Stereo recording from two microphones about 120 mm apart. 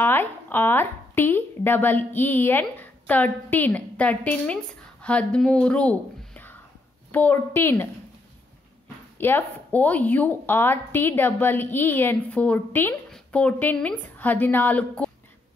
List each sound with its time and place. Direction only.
0.0 s a woman's voice: 15° left (ahead or behind)
9.2 s a woman's voice: 15° left (ahead or behind)